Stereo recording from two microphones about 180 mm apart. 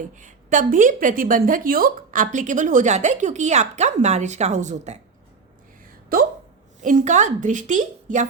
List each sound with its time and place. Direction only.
0.0 s a woman's voice: 45° right (ahead or behind)
6.1 s a woman's voice: 55° right (ahead or behind)